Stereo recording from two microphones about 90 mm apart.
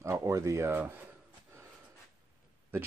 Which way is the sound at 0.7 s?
15° right (ahead or behind).